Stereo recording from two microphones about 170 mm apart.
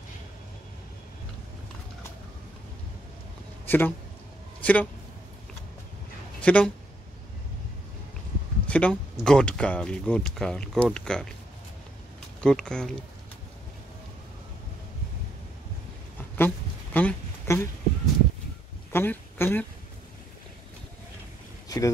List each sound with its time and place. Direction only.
3.6 s speech: 10° left (ahead or behind)
6.4 s speech: 5° left (ahead or behind)
8.6 s a sound: 5° left (ahead or behind)
9.2 s speech: 5° left (ahead or behind)
12.4 s speech: 5° left (ahead or behind)
16.2 s a sound: 10° left (ahead or behind)
18.9 s speech: 15° left (ahead or behind)
21.6 s boat: 20° left (ahead or behind)